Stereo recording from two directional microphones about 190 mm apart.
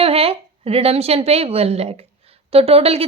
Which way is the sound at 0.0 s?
30° right (ahead or behind).